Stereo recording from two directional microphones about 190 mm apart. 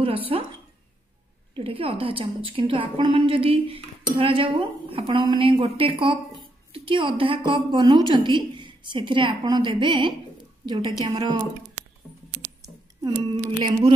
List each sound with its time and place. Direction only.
0.0 s speech: 30° right (ahead or behind)
1.5 s a woman's voice: 30° right (ahead or behind)
12.6 s speech: 25° right (ahead or behind)